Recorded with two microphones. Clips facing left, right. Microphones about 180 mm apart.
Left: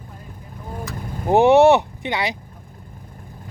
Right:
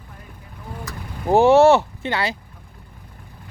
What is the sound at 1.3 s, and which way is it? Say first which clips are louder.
Speech: even; 20° left (ahead or behind).